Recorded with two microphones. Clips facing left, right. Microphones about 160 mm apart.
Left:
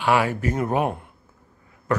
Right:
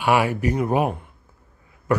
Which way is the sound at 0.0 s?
15° right (ahead or behind).